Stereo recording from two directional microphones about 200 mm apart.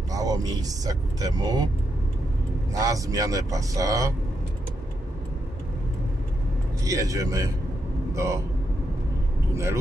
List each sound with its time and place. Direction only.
0.1 s speech: 20° right (ahead or behind)
2.7 s a man's voice: 15° right (ahead or behind)
6.8 s a man's voice: 15° right (ahead or behind)